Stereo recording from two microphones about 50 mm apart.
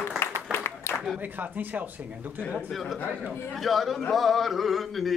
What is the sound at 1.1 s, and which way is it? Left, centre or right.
A man's voice, right.